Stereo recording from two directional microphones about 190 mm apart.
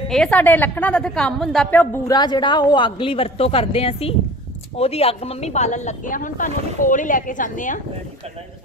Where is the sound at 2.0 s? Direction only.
20° left (ahead or behind); by 7.8 s 45° left (ahead or behind).